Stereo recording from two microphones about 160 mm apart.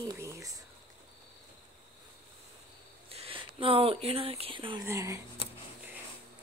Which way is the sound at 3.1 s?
35° right (ahead or behind).